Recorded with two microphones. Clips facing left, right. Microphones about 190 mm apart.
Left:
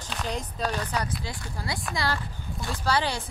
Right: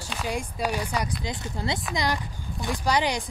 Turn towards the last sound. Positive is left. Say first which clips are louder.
# right 2 dB
turn(degrees=-15)  # may be behind; listen again after turning